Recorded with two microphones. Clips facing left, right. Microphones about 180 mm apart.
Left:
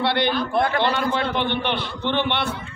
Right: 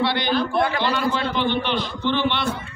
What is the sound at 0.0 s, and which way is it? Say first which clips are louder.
A man's voice: even; 60° left (ahead or behind).